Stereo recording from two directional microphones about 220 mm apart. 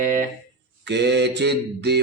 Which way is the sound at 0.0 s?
35° right (ahead or behind).